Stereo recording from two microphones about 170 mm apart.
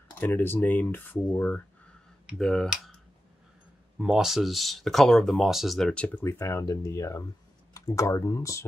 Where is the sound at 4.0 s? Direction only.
5° right (ahead or behind).